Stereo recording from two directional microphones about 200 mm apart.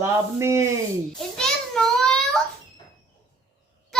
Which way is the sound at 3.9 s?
Centre (ahead or behind).